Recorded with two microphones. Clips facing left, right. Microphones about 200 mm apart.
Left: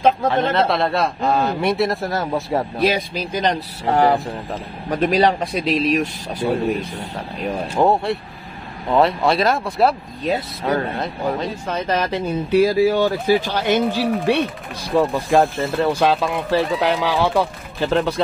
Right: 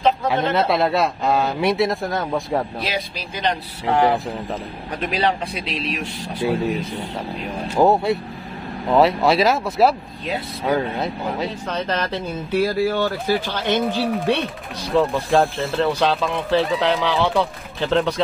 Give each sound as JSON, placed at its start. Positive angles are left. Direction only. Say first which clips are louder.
{"t": 0.3, "sound": "a man's voice", "louder": "left 1 dB", "side_deg": -5}
{"t": 2.8, "sound": "speech", "louder": "left 7 dB", "side_deg": 50}
{"t": 7.7, "sound": "a man's voice", "louder": "right 2 dB", "side_deg": -5}
{"t": 11.6, "sound": "speech", "louder": "left 2 dB", "side_deg": 10}
{"t": 15.3, "sound": "a man's voice", "louder": "left 2 dB", "side_deg": 0}